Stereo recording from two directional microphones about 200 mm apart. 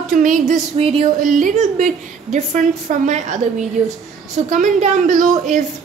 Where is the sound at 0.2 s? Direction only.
40° right (ahead or behind).